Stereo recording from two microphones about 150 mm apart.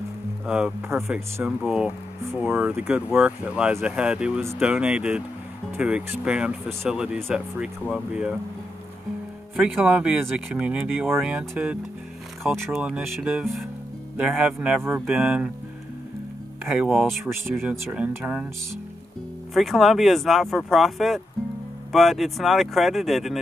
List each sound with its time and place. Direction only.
0.5 s speech: 5° right (ahead or behind)
1.4 s speech: centre (ahead or behind)
2.4 s speech: 15° right (ahead or behind)
9.6 s speech: 5° right (ahead or behind)
16.6 s speech: 5° right (ahead or behind)
19.5 s speech: centre (ahead or behind)